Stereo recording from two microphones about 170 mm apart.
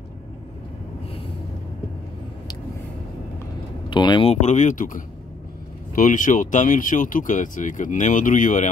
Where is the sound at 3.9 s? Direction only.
25° left (ahead or behind).